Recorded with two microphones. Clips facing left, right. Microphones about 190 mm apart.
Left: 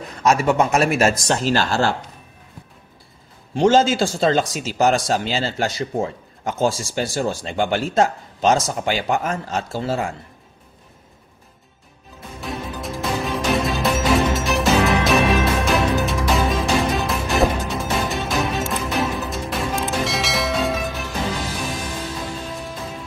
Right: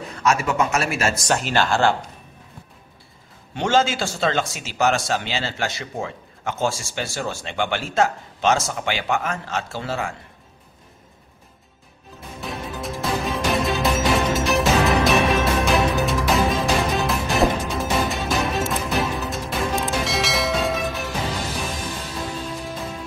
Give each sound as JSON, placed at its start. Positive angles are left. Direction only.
{"t": 0.2, "sound": "speech", "side_deg": 35}
{"t": 3.5, "sound": "speech", "side_deg": 35}
{"t": 12.4, "sound": "music", "side_deg": 0}